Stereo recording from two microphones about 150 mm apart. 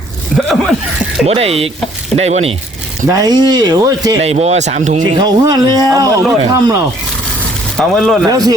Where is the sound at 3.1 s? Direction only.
25° right (ahead or behind).